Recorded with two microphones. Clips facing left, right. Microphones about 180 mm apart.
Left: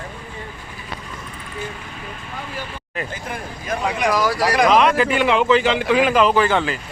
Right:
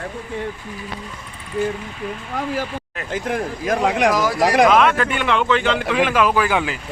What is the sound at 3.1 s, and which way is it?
Speech, 90° right.